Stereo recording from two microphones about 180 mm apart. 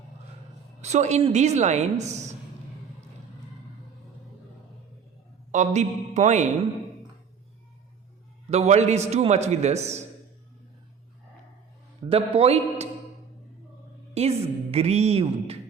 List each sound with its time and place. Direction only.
0.8 s a woman's voice: 40° right (ahead or behind)
5.5 s a woman's voice: 40° right (ahead or behind)
8.4 s a woman's voice: 40° right (ahead or behind)
12.0 s a woman's voice: 30° right (ahead or behind)
14.1 s a woman's voice: 35° right (ahead or behind)